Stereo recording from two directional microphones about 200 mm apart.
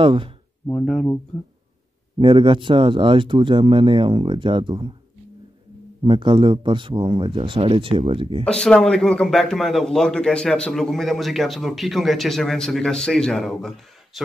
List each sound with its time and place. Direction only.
0.0 s speech: 25° right (ahead or behind)
0.7 s a man's voice: 5° left (ahead or behind)
2.1 s speech: 25° right (ahead or behind)
6.0 s speech: 25° right (ahead or behind)
8.5 s a man's voice: 5° left (ahead or behind)